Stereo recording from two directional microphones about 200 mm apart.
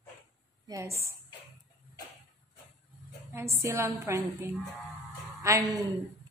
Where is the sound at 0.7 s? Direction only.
15° right (ahead or behind).